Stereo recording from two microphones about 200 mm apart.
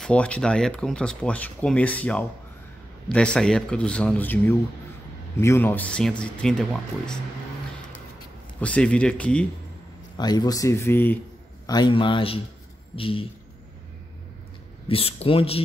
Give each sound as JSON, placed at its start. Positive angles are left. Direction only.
{"t": 0.0, "sound": "speech", "side_deg": 5}
{"t": 8.5, "sound": "speech", "side_deg": 5}
{"t": 10.1, "sound": "a man's voice", "side_deg": 20}
{"t": 14.9, "sound": "a man's voice", "side_deg": 30}